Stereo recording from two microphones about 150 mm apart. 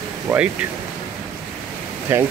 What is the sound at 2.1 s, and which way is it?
Speech, 15° right (ahead or behind).